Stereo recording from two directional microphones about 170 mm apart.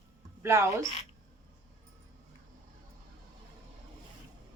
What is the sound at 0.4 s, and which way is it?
Speech, 15° right (ahead or behind).